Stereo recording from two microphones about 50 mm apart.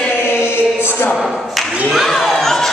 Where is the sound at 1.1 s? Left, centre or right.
Centre.